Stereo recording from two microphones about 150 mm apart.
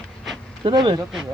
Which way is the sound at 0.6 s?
35° right (ahead or behind).